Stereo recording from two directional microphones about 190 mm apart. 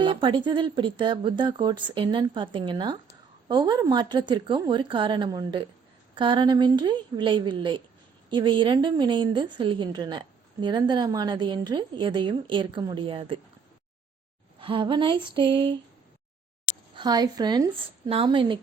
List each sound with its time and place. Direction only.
0.0 s a woman's voice: 25° right (ahead or behind)
14.6 s a woman's voice: 25° right (ahead or behind)
16.9 s a woman's voice: 20° right (ahead or behind)